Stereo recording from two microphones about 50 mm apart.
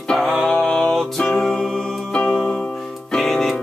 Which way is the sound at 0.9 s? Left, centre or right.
Centre.